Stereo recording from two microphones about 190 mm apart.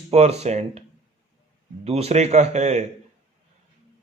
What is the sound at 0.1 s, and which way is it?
Speech, 35° right (ahead or behind).